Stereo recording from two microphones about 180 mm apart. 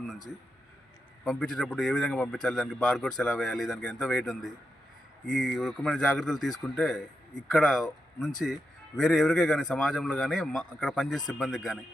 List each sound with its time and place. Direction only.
1.2 s a man's voice: centre (ahead or behind)